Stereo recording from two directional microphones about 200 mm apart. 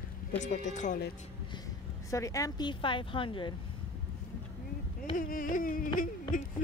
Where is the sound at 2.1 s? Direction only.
15° left (ahead or behind).